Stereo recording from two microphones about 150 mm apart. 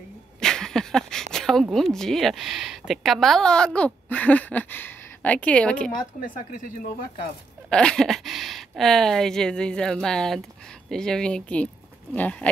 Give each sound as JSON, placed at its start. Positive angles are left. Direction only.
{"t": 0.4, "sound": "speech", "side_deg": 5}
{"t": 5.9, "sound": "speech", "side_deg": 60}
{"t": 7.7, "sound": "speech", "side_deg": 5}